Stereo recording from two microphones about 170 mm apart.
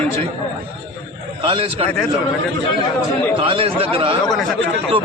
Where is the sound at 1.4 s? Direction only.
30° right (ahead or behind).